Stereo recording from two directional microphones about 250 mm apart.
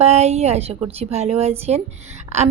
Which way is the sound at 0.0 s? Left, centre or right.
Right.